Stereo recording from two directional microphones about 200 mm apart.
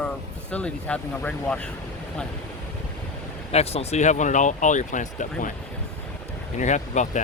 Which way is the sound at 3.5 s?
30° left (ahead or behind).